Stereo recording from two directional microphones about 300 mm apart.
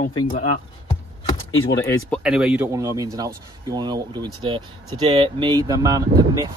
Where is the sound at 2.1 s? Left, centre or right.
Centre.